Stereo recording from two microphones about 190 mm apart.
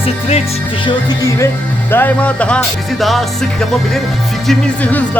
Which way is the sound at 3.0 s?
Centre (ahead or behind).